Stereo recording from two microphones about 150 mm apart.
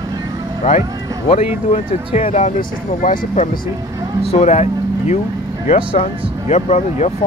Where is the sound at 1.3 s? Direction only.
40° left (ahead or behind).